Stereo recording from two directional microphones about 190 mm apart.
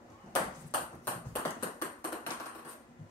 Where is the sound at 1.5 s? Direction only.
15° left (ahead or behind).